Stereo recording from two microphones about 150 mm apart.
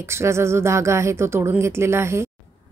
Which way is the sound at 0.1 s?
20° right (ahead or behind).